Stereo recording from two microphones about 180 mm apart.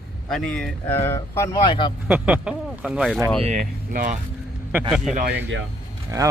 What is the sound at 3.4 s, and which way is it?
Speech, 40° right (ahead or behind).